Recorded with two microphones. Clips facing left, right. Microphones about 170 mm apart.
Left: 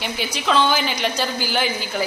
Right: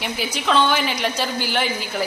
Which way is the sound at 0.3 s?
Centre (ahead or behind).